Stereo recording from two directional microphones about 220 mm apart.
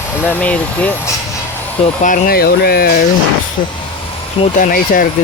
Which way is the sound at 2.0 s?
40° left (ahead or behind).